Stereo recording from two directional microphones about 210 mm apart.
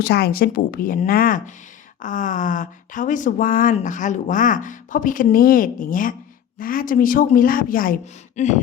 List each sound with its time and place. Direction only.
0.0 s a woman's voice: 50° left (ahead or behind)